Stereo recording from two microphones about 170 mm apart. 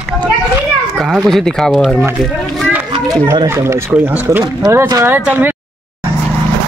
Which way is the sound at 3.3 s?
15° right (ahead or behind).